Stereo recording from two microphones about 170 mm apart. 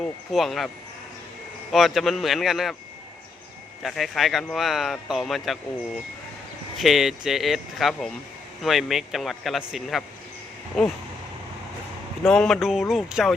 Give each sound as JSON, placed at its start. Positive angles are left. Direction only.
{"t": 0.0, "sound": "speech", "side_deg": 0}
{"t": 1.7, "sound": "speech", "side_deg": 0}
{"t": 3.8, "sound": "speech", "side_deg": 0}
{"t": 6.7, "sound": "speech", "side_deg": 0}
{"t": 12.3, "sound": "speech", "side_deg": 5}